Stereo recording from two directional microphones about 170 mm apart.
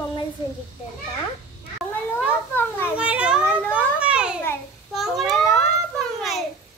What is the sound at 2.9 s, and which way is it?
Speech, 5° right (ahead or behind).